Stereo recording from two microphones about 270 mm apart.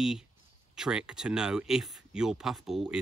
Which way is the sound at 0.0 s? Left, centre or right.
Centre.